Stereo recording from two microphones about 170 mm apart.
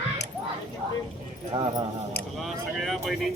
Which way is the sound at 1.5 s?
30° right (ahead or behind).